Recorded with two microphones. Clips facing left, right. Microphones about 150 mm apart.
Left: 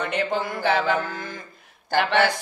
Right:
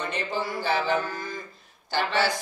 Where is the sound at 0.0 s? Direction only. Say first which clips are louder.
Left 5 dB; 60° left (ahead or behind).